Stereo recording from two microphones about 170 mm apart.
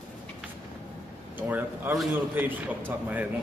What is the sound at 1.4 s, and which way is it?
A man's voice, 10° right (ahead or behind).